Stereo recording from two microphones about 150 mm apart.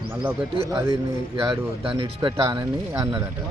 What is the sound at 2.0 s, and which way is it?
Speech, 30° right (ahead or behind).